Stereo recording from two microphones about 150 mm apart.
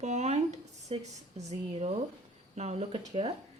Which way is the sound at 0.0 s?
50° right (ahead or behind).